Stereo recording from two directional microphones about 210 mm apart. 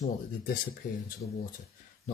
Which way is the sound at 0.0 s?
45° left (ahead or behind).